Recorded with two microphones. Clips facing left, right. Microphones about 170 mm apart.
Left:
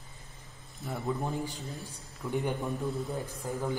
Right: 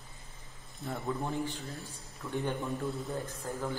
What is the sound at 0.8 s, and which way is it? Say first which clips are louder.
A man's voice: left 2 dB; 5° left (ahead or behind).